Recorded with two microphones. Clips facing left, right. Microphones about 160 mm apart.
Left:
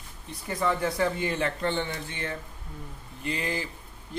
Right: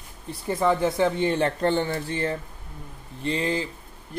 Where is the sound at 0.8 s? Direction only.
25° right (ahead or behind).